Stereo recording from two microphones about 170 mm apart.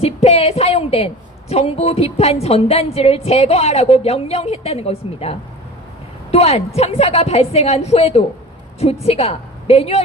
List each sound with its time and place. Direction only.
0.0 s a woman's voice: 40° left (ahead or behind)